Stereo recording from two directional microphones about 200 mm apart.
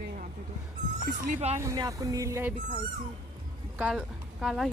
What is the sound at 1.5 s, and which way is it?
Speech, 15° right (ahead or behind).